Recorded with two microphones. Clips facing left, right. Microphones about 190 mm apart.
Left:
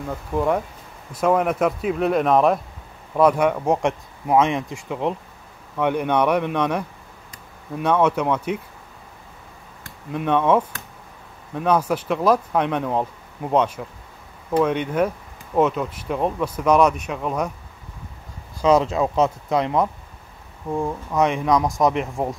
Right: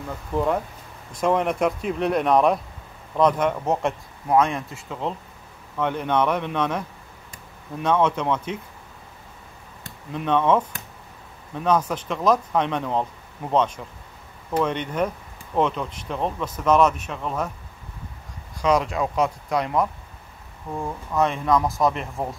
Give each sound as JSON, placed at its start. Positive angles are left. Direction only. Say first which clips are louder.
{"t": 0.3, "sound": "speech", "louder": "left 1 dB", "side_deg": 15}
{"t": 7.8, "sound": "speech", "louder": "left 2 dB", "side_deg": 10}
{"t": 10.1, "sound": "speech", "louder": "left 2 dB", "side_deg": 10}
{"t": 11.6, "sound": "speech", "louder": "left 2 dB", "side_deg": 10}
{"t": 18.6, "sound": "speech", "louder": "left 4 dB", "side_deg": 25}